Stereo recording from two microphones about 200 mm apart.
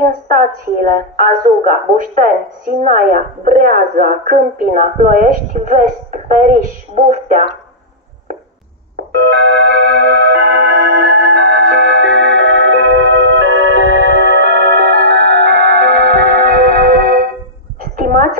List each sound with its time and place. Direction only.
0.0 s a woman's voice: 45° right (ahead or behind)
9.1 s music: 65° right (ahead or behind); by 17.3 s 45° right (ahead or behind)
17.9 s a sound: 45° right (ahead or behind)